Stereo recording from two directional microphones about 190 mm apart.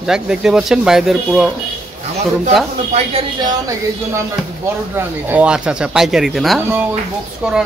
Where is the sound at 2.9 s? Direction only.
30° right (ahead or behind).